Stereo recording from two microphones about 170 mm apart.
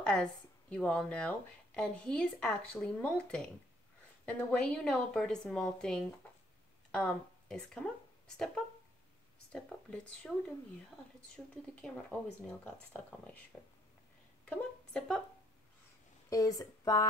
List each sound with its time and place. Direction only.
0.0 s speech: 5° left (ahead or behind)
9.5 s speech: 5° left (ahead or behind)
11.3 s speech: 5° left (ahead or behind)
14.4 s a sound: 5° left (ahead or behind)
16.3 s speech: 20° left (ahead or behind)